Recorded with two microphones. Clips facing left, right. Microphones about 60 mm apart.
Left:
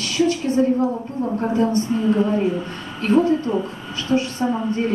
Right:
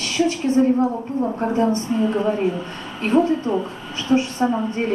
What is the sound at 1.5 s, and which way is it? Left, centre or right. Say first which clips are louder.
Speech: even; right.